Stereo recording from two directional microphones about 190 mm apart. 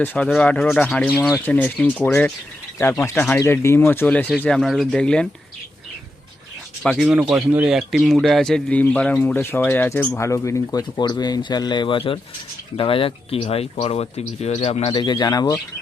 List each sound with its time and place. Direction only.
0.0 s speech: 10° left (ahead or behind)
6.8 s speech: centre (ahead or behind); by 15.5 s 20° left (ahead or behind)